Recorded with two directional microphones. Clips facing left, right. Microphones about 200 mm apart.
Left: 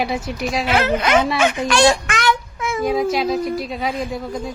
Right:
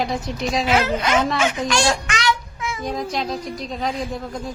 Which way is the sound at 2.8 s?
5° left (ahead or behind).